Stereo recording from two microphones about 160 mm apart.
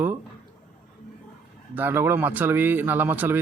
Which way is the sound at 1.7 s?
15° right (ahead or behind).